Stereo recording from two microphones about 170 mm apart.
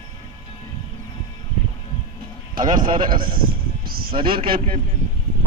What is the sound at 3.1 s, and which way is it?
Speech, 55° right (ahead or behind).